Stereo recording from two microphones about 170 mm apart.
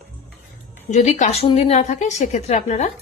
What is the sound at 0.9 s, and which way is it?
A woman's voice, 45° left (ahead or behind).